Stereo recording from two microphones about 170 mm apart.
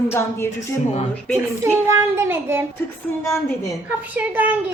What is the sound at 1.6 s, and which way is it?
A child's voice, 15° right (ahead or behind).